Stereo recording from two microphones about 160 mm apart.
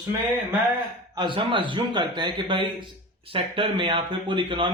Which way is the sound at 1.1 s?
30° right (ahead or behind).